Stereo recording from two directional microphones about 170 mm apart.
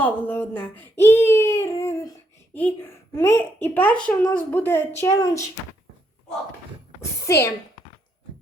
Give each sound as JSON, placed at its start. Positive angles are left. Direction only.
{"t": 0.0, "sound": "a child's voice", "side_deg": 10}
{"t": 4.9, "sound": "speech", "side_deg": 20}
{"t": 7.0, "sound": "a woman's voice", "side_deg": 15}